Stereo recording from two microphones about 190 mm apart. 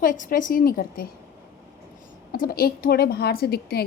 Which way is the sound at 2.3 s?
50° left (ahead or behind).